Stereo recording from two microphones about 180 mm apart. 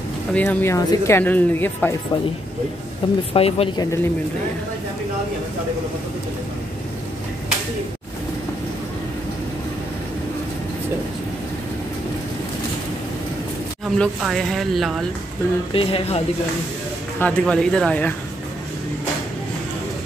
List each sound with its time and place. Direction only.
0.3 s speech: 5° left (ahead or behind)
3.0 s speech: 30° left (ahead or behind)
13.9 s speech: 5° left (ahead or behind)
15.7 s speech: 30° left (ahead or behind)
17.2 s speech: 5° left (ahead or behind)